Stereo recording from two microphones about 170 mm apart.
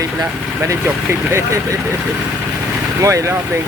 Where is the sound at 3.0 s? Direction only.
20° right (ahead or behind).